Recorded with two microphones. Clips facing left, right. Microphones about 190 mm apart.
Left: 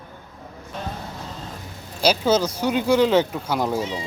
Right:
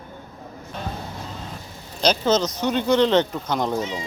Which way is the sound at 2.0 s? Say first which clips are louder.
Left 1 dB; 10° left (ahead or behind).